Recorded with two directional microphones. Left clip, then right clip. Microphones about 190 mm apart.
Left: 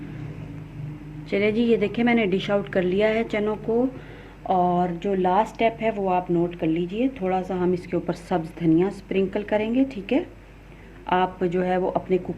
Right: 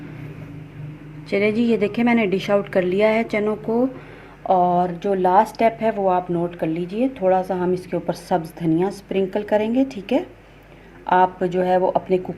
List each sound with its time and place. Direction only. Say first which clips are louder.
1.3 s speech: right 2 dB; 30° right (ahead or behind)